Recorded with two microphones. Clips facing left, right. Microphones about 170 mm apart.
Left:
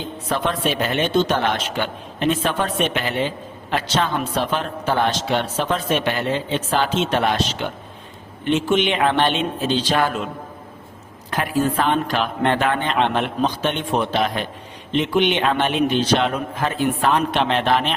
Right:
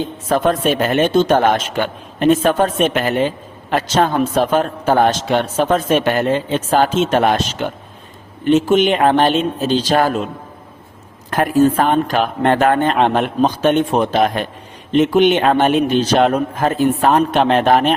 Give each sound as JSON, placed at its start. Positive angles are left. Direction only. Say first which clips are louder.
{"t": 0.0, "sound": "a man's voice", "louder": "right 7 dB", "side_deg": -45}
{"t": 11.3, "sound": "a man's voice", "louder": "right 7 dB", "side_deg": -50}